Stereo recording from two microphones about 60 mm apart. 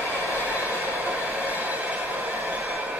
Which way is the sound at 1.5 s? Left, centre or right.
Right.